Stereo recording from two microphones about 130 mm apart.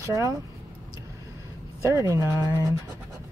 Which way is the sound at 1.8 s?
25° right (ahead or behind).